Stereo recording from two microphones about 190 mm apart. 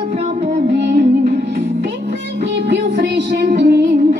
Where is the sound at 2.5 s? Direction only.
65° right (ahead or behind).